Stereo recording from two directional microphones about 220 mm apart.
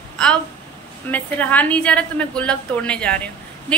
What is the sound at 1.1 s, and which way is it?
A woman's voice, 5° left (ahead or behind).